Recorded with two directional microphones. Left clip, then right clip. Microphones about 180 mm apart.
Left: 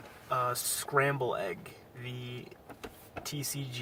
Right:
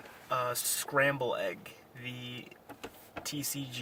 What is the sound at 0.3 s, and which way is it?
Speech, 20° right (ahead or behind).